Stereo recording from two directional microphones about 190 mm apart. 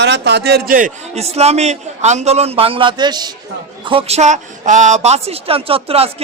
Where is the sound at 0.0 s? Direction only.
65° right (ahead or behind).